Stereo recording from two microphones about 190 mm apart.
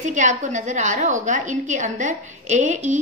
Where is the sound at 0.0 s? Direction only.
40° right (ahead or behind).